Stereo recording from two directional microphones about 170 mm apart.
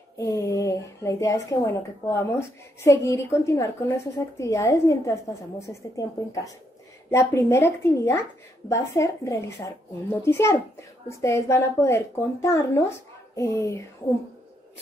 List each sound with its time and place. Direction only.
0.2 s a woman's voice: 15° left (ahead or behind)